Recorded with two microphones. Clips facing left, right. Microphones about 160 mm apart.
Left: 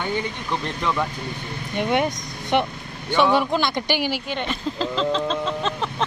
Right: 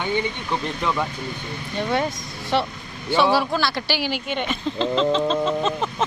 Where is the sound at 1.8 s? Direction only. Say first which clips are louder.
Left 2 dB; 20° left (ahead or behind).